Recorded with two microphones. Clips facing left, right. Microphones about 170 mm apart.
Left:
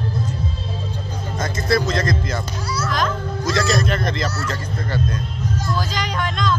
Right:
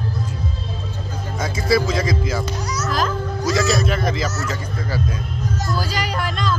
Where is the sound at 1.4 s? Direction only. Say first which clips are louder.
Right 1 dB; 5° right (ahead or behind).